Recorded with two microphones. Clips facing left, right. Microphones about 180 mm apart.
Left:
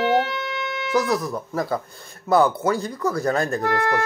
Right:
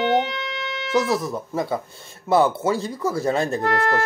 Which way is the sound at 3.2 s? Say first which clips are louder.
Right 1 dB; 25° right (ahead or behind).